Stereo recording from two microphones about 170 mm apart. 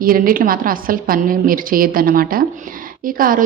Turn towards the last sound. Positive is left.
turn(degrees=-55)  # may be behind; listen again after turning